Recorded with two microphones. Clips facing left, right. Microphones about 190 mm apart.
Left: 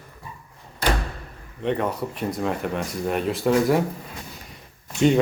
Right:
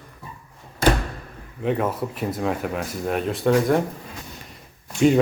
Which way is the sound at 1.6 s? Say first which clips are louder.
Right 1 dB; 5° right (ahead or behind).